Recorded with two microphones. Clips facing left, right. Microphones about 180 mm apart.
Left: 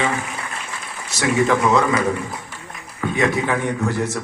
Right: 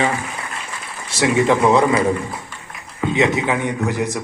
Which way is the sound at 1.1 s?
30° right (ahead or behind).